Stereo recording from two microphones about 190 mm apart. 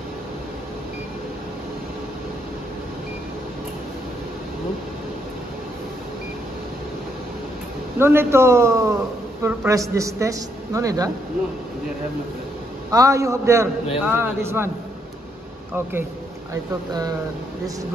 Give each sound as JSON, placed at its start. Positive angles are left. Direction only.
{"t": 8.0, "sound": "a man's voice", "side_deg": -10}
{"t": 12.9, "sound": "a man's voice", "side_deg": -15}
{"t": 15.7, "sound": "a man's voice", "side_deg": -10}